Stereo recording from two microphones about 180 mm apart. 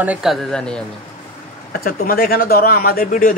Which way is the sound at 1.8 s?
55° left (ahead or behind).